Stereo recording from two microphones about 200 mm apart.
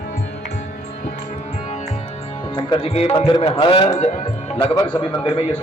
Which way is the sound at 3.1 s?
20° left (ahead or behind).